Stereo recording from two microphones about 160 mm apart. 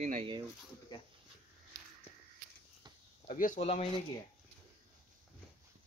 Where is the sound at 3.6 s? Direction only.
40° left (ahead or behind).